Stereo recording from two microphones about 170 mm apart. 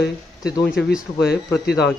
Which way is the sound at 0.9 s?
Centre (ahead or behind).